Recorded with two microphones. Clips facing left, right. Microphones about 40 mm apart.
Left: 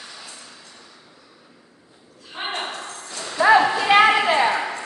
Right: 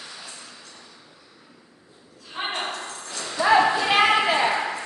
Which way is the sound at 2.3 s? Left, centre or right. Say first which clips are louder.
Even; centre.